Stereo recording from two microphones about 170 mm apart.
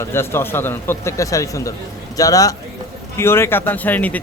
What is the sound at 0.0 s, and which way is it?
Speech, 15° left (ahead or behind).